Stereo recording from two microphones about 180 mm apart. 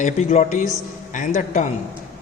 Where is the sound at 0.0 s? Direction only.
40° left (ahead or behind).